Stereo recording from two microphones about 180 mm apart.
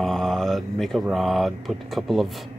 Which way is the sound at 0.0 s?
5° left (ahead or behind).